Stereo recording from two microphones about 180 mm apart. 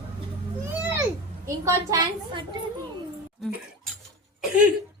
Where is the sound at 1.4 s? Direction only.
20° right (ahead or behind).